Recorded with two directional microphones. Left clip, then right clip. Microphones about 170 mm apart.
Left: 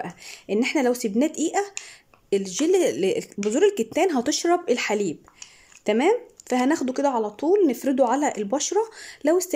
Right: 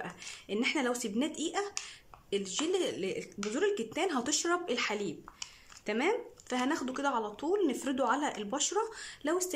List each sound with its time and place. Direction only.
0.0 s speech: 35° left (ahead or behind)